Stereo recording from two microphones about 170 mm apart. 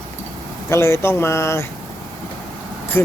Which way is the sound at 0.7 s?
15° left (ahead or behind).